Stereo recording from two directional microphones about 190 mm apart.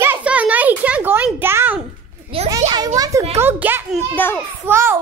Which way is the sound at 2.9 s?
20° right (ahead or behind).